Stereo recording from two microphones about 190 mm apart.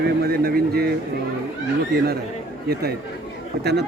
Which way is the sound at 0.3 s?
55° right (ahead or behind).